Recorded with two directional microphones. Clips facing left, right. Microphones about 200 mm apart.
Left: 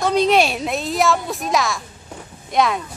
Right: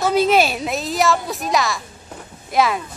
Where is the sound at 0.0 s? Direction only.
5° right (ahead or behind).